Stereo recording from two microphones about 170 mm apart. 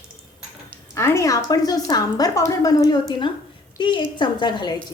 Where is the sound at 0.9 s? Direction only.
15° left (ahead or behind).